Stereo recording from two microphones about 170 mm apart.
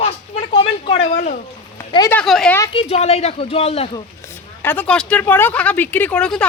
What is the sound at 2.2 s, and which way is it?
Speech, centre (ahead or behind).